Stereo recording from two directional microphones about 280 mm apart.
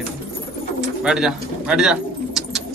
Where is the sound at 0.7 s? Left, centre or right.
Centre.